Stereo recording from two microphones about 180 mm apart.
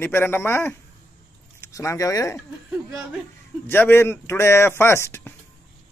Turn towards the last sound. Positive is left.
turn(degrees=15)  # may be behind; listen again after turning